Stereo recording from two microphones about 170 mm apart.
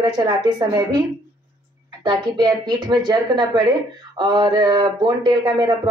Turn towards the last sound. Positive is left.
turn(degrees=-25)  # may be behind; listen again after turning